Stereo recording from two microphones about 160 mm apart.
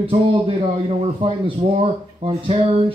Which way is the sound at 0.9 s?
35° right (ahead or behind).